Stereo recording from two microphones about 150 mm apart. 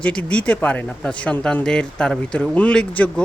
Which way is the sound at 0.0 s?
5° left (ahead or behind).